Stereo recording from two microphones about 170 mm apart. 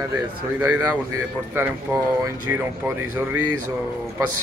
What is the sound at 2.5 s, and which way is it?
Speech, 10° right (ahead or behind).